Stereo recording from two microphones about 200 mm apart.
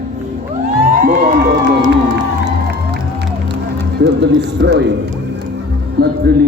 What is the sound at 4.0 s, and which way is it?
Speech, 60° right (ahead or behind).